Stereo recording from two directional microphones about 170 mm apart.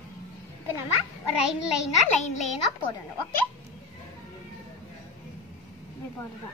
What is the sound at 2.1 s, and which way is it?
Speech, 45° left (ahead or behind).